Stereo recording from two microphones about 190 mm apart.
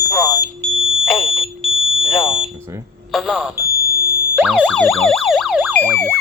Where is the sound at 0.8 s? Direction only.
Centre (ahead or behind).